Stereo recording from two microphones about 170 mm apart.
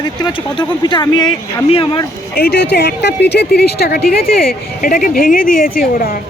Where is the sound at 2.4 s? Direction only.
75° left (ahead or behind).